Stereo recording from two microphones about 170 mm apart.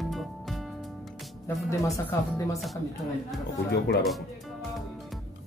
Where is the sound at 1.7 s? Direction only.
15° left (ahead or behind).